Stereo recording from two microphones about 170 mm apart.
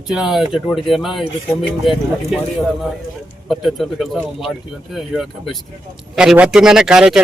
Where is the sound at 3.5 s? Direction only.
Centre (ahead or behind).